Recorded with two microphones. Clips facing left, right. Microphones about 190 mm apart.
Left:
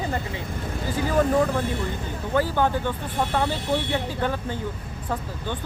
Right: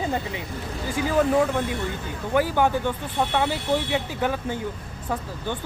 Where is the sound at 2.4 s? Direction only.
15° right (ahead or behind).